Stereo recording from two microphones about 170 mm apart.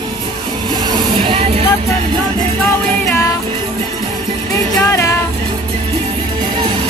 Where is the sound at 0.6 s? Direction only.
25° right (ahead or behind).